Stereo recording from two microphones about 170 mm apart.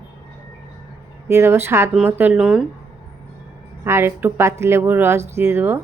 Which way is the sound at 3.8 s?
15° right (ahead or behind).